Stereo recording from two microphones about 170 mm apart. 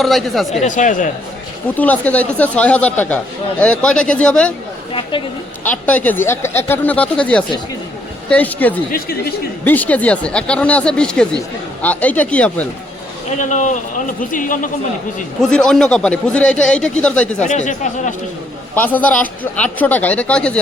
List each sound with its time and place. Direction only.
0.0 s speech: centre (ahead or behind)
0.6 s a man's voice: 50° left (ahead or behind)
1.7 s speech: 10° left (ahead or behind)
4.9 s speech: 30° left (ahead or behind)
5.6 s speech: 10° left (ahead or behind)
13.4 s a man's voice: 45° left (ahead or behind)
15.4 s speech: 5° left (ahead or behind)
17.4 s a man's voice: 45° left (ahead or behind)
18.7 s speech: 10° left (ahead or behind)